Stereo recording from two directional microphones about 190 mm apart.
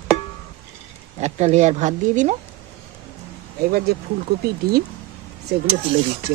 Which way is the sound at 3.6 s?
55° right (ahead or behind).